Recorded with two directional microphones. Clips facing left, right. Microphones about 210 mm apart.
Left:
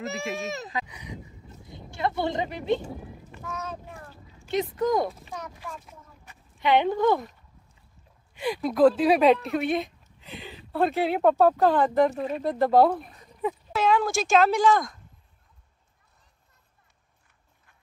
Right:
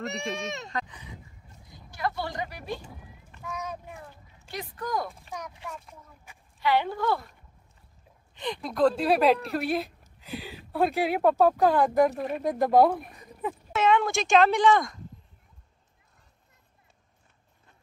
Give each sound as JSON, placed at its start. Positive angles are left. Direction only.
{"t": 0.0, "sound": "speech", "side_deg": 0}
{"t": 0.8, "sound": "speech", "side_deg": 15}
{"t": 1.7, "sound": "speech", "side_deg": 25}
{"t": 3.5, "sound": "speech", "side_deg": -15}
{"t": 4.5, "sound": "speech", "side_deg": 20}
{"t": 6.3, "sound": "a sound", "side_deg": -10}
{"t": 6.6, "sound": "speech", "side_deg": 20}
{"t": 8.4, "sound": "speech", "side_deg": 5}